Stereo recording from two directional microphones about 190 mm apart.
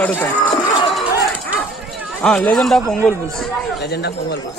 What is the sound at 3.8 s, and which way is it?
Speech, 60° left (ahead or behind).